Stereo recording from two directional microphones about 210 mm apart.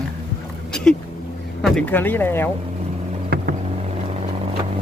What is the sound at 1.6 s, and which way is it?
Speech, 5° left (ahead or behind).